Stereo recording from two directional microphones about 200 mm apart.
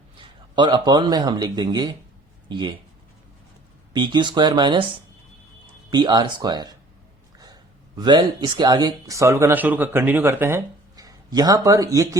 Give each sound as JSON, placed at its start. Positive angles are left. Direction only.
{"t": 0.2, "sound": "speech", "side_deg": -25}
{"t": 3.9, "sound": "speech", "side_deg": -20}
{"t": 5.9, "sound": "speech", "side_deg": -20}